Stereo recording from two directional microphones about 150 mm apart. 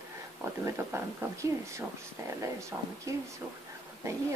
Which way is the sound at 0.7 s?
15° right (ahead or behind).